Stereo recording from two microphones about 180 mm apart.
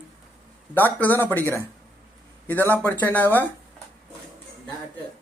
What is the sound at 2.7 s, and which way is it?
Speech, 10° left (ahead or behind).